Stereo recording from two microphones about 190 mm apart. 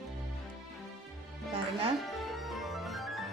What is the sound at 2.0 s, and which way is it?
Music, centre (ahead or behind).